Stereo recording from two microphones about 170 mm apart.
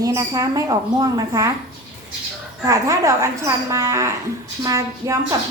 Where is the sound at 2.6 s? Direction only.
20° right (ahead or behind).